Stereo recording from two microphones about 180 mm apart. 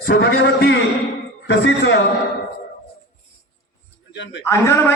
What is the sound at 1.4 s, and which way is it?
Speech, 90° left.